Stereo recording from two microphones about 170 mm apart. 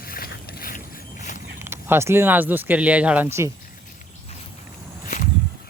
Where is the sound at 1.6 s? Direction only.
15° right (ahead or behind).